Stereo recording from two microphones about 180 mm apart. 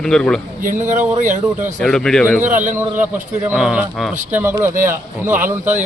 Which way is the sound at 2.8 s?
10° right (ahead or behind).